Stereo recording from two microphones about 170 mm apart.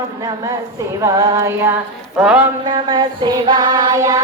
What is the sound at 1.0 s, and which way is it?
Music, 15° right (ahead or behind).